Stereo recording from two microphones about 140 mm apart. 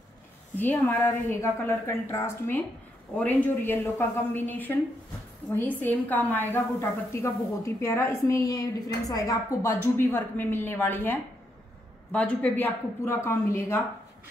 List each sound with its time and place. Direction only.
0.6 s a woman's voice: 15° left (ahead or behind)